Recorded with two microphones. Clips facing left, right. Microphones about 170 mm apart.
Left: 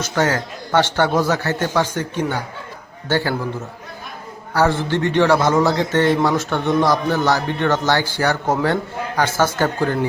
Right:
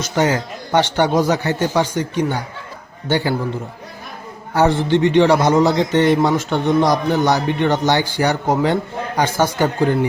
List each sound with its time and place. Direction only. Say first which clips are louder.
0.2 s a man's voice: right 2 dB; 15° right (ahead or behind)
4.5 s a man's voice: right 3 dB; 20° right (ahead or behind)